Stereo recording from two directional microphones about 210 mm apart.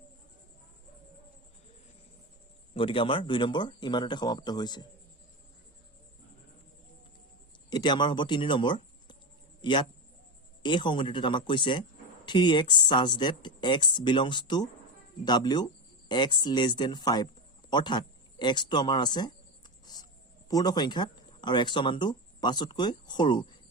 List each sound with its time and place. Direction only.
2.7 s speech: 25° left (ahead or behind)
7.7 s a man's voice: 20° left (ahead or behind)
19.8 s a sound: 20° left (ahead or behind)
20.5 s speech: 20° left (ahead or behind)